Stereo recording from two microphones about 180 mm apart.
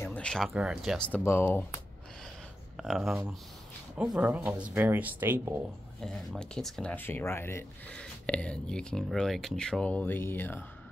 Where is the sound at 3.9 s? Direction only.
5° right (ahead or behind).